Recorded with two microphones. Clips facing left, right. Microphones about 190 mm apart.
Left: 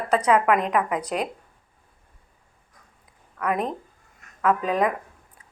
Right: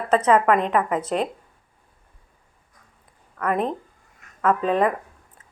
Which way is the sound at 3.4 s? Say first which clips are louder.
Right 2 dB; centre (ahead or behind).